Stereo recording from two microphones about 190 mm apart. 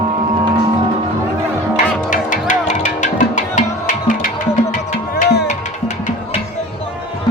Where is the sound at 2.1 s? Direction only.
40° left (ahead or behind).